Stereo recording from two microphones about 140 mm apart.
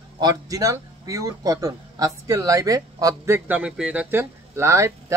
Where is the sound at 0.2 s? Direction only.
25° right (ahead or behind).